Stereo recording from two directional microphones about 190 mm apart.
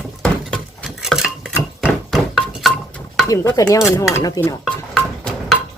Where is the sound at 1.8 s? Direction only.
Centre (ahead or behind).